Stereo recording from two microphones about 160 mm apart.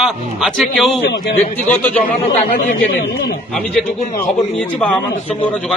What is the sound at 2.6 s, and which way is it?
Speech, 80° left.